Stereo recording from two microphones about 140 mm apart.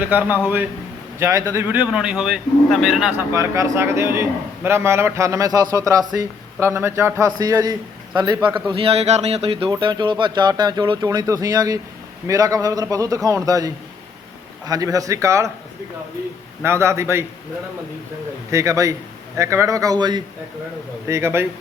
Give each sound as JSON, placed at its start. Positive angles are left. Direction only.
{"t": 0.0, "sound": "a man's voice", "side_deg": -10}
{"t": 3.2, "sound": "speech", "side_deg": -20}
{"t": 14.7, "sound": "speech", "side_deg": -25}
{"t": 16.6, "sound": "speech", "side_deg": -20}
{"t": 18.5, "sound": "speech", "side_deg": -20}
{"t": 21.1, "sound": "speech", "side_deg": -20}